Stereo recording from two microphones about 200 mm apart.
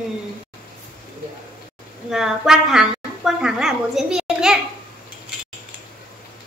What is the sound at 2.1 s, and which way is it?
A woman's voice, centre (ahead or behind).